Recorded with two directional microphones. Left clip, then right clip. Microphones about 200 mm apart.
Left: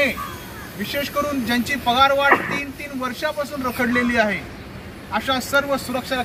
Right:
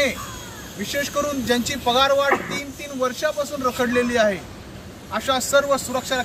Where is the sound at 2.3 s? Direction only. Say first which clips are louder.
Left 4 dB; 40° left (ahead or behind).